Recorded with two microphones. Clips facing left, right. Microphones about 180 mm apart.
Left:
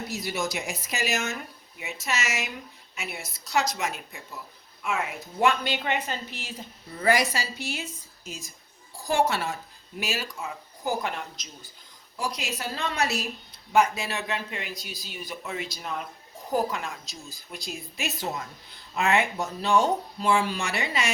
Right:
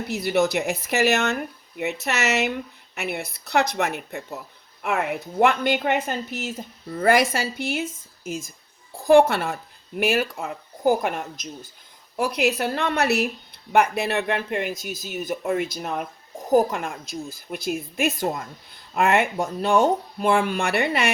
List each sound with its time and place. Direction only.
0.1 s a woman's voice: 60° right (ahead or behind)